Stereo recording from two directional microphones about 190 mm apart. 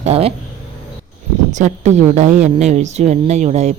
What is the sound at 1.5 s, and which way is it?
Speech, 40° right (ahead or behind).